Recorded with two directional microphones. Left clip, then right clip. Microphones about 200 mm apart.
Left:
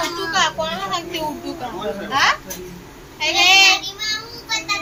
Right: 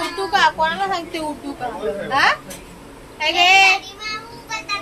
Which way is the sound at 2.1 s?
25° right (ahead or behind).